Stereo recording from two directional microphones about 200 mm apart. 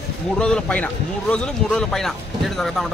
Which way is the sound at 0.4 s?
5° left (ahead or behind).